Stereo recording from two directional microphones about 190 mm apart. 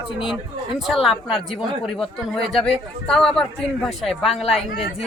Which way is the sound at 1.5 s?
30° left (ahead or behind).